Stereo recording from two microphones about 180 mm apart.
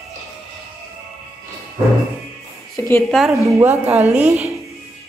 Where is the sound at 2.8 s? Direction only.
15° left (ahead or behind).